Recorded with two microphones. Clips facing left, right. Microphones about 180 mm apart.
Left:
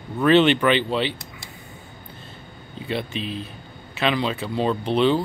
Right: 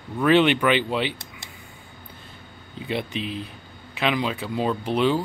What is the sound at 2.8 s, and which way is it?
Speech, 15° right (ahead or behind).